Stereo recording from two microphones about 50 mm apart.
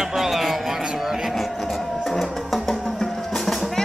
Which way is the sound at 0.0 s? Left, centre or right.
Centre.